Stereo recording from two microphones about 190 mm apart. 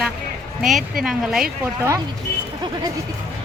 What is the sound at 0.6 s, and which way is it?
Speech, centre (ahead or behind).